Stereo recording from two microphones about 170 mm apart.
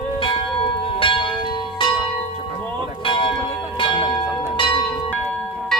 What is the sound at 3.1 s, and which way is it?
Church bell, 30° left (ahead or behind).